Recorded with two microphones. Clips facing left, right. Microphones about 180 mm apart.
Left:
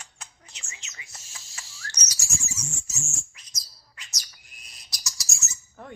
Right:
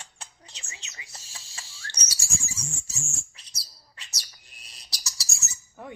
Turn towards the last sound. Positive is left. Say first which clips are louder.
# right 2 dB
turn(degrees=-10)  # may be behind; listen again after turning